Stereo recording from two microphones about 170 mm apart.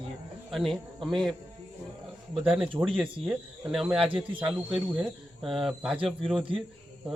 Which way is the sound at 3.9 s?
35° right (ahead or behind).